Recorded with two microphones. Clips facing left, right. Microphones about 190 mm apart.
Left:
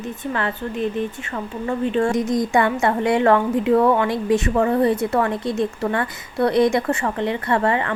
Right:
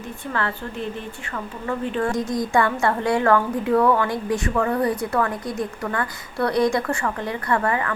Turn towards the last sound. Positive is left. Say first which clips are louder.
# left 3 dB
turn(degrees=25)  # may be behind; listen again after turning